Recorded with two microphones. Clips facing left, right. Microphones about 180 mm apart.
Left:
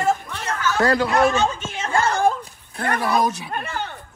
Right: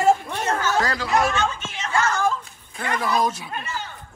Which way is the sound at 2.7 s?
60° left (ahead or behind).